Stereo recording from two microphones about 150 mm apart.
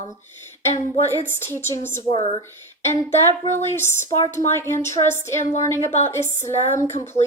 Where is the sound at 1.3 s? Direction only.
15° left (ahead or behind).